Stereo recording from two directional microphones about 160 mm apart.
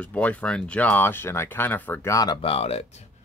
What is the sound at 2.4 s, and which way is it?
Speech, 40° left (ahead or behind).